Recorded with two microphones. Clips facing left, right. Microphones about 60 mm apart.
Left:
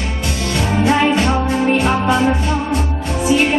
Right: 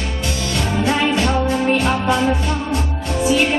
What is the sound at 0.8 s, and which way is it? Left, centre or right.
Music, centre.